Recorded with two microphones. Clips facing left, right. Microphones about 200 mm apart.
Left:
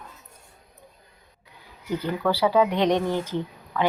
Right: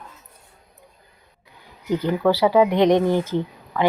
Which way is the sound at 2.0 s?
15° right (ahead or behind).